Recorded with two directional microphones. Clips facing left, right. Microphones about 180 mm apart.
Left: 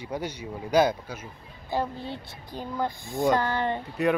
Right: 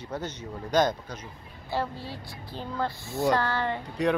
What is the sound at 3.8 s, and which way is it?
Speech, 5° left (ahead or behind).